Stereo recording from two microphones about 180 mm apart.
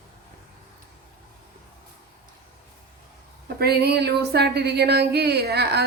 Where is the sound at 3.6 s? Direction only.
65° right (ahead or behind).